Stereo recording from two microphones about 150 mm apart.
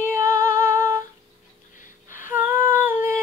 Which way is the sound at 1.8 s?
60° left (ahead or behind).